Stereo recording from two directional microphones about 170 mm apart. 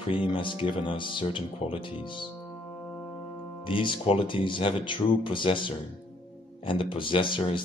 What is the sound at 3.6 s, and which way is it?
Speech, 30° left (ahead or behind).